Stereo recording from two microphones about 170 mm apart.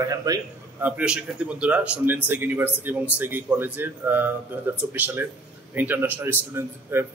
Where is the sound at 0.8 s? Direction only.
5° right (ahead or behind).